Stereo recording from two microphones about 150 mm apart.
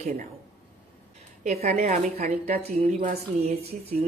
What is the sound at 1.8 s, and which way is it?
Speech, 75° right (ahead or behind).